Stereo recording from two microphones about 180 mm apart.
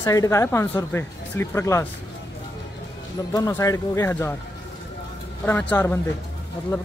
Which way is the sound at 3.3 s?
20° left (ahead or behind).